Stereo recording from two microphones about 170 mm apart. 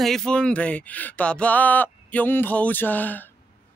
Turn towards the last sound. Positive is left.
turn(degrees=10)  # may be behind; listen again after turning